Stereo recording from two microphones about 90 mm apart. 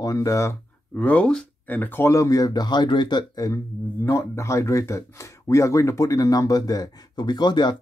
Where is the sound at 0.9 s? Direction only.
15° left (ahead or behind).